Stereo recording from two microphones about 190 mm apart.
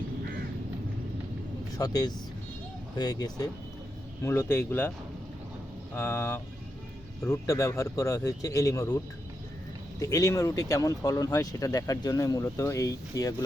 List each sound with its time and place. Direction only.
1.7 s speech: 20° left (ahead or behind)
5.9 s speech: 10° left (ahead or behind)
10.0 s speech: 15° left (ahead or behind)